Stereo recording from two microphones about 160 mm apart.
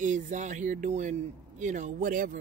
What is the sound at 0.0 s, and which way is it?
Speech, 50° right (ahead or behind).